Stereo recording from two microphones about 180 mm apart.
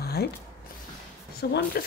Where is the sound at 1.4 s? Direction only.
60° left (ahead or behind).